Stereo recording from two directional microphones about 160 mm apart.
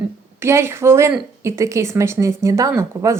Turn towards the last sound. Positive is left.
turn(degrees=-20)  # may be behind; listen again after turning